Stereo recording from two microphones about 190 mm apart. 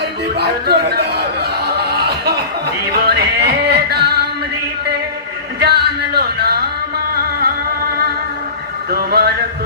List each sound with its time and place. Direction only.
0.3 s a sound: 55° right (ahead or behind)
2.9 s music: 55° right (ahead or behind)
5.5 s music: 60° right (ahead or behind)
8.9 s music: 55° right (ahead or behind)